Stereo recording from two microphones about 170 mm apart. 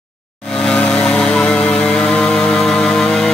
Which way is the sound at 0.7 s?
5° left (ahead or behind).